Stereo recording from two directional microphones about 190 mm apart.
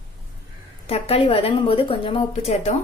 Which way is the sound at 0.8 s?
30° left (ahead or behind).